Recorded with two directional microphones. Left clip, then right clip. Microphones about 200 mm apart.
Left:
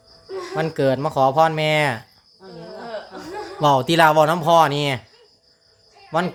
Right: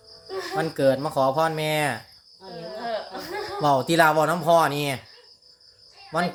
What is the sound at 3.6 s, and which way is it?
Speech, 25° left (ahead or behind).